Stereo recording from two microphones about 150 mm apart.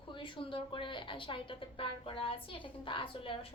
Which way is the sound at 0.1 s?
35° left (ahead or behind).